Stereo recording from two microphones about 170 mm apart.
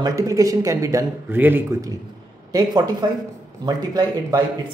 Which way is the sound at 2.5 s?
25° right (ahead or behind).